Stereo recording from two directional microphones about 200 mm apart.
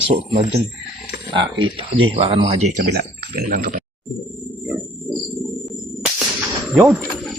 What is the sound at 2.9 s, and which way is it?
Speech, 45° right (ahead or behind).